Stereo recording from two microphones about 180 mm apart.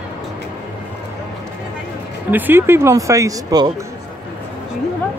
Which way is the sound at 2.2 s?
10° right (ahead or behind).